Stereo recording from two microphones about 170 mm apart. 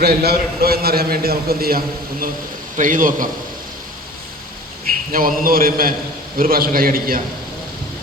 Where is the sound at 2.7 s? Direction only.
50° right (ahead or behind).